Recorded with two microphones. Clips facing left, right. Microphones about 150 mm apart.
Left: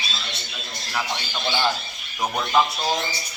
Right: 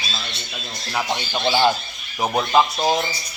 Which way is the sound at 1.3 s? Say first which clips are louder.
Right 7 dB; 30° right (ahead or behind).